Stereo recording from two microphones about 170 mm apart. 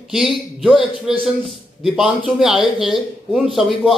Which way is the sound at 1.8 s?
5° right (ahead or behind).